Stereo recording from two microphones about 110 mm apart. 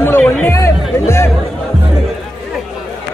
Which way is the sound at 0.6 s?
25° left (ahead or behind).